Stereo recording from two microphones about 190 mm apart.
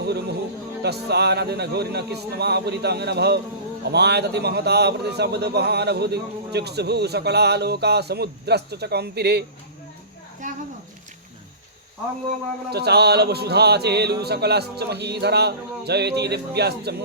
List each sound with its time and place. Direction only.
0.0 s a man's voice: 60° right (ahead or behind)
12.7 s a man's voice: 60° right (ahead or behind)